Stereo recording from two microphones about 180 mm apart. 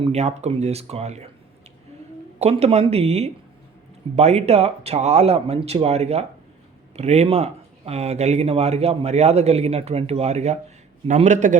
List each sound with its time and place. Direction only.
0.0 s speech: 35° right (ahead or behind)
2.4 s a man's voice: 35° right (ahead or behind)